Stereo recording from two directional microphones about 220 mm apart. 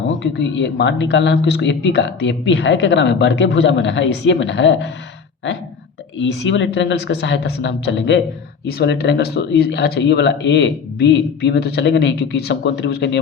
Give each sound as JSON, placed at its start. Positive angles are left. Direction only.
{"t": 0.2, "sound": "speech", "side_deg": 50}
{"t": 6.1, "sound": "speech", "side_deg": 55}